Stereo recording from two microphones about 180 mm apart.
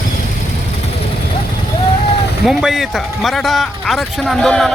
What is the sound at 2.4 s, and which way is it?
Speech, centre (ahead or behind).